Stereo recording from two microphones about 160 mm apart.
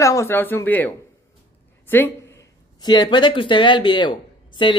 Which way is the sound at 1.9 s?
15° left (ahead or behind).